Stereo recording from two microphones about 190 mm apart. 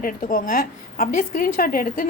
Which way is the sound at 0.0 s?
50° left (ahead or behind).